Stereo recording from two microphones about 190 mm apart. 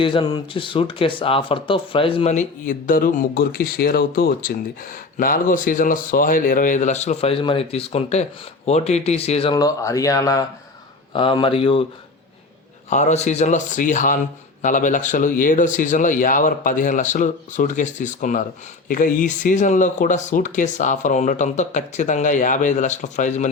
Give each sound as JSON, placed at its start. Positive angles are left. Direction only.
{"t": 0.0, "sound": "speech", "side_deg": 25}
{"t": 12.9, "sound": "speech", "side_deg": 40}